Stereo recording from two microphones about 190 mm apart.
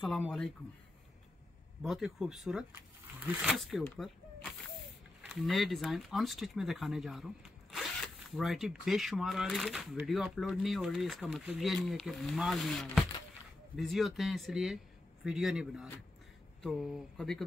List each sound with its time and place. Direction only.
0.0 s speech: centre (ahead or behind)
1.8 s speech: centre (ahead or behind)